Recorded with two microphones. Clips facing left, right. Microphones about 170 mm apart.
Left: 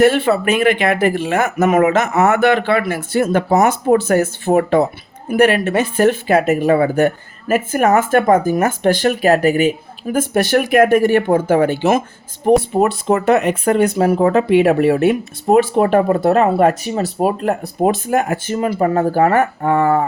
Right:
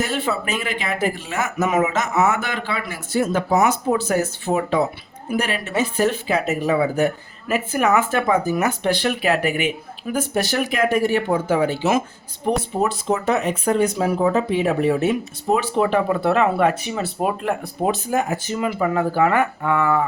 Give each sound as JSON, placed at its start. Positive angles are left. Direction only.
{"t": 0.0, "sound": "speech", "side_deg": 65}